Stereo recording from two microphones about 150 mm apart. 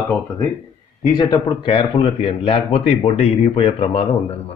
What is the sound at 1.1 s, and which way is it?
A man's voice, 30° left (ahead or behind).